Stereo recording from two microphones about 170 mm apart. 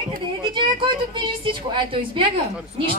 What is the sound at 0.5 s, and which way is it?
A woman's voice, 30° right (ahead or behind).